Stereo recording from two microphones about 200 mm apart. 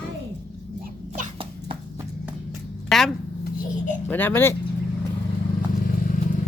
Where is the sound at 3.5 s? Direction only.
45° left (ahead or behind).